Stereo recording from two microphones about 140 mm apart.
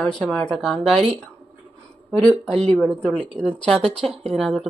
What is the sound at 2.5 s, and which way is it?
Speech, 10° left (ahead or behind).